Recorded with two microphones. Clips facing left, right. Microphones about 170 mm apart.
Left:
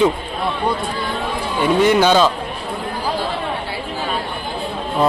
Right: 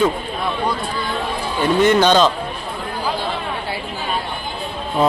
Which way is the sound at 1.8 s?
10° left (ahead or behind).